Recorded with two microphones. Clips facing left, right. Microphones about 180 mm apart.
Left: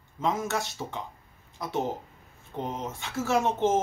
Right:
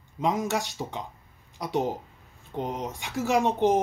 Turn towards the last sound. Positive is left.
turn(degrees=-15)  # may be behind; listen again after turning